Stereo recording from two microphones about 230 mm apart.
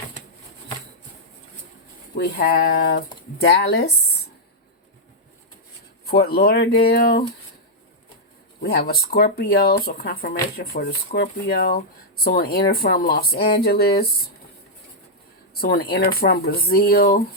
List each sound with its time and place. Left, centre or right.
2.1 s speech: left
6.1 s speech: left
8.6 s speech: left
15.6 s speech: left